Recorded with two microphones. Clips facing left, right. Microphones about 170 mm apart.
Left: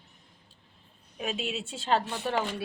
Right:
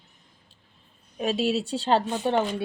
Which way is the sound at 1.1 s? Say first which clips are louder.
Right 9 dB; 35° right (ahead or behind).